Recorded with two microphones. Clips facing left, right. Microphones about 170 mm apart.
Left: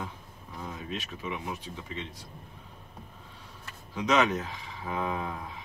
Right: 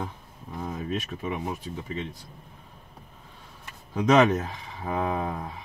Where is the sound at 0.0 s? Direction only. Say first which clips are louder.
Right 4 dB; 45° right (ahead or behind).